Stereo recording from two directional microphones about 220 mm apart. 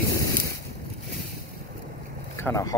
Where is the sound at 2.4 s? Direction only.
15° left (ahead or behind).